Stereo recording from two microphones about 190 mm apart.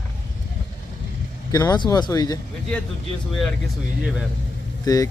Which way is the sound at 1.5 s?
20° left (ahead or behind).